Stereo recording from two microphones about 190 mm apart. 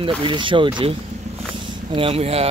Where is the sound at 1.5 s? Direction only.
25° right (ahead or behind).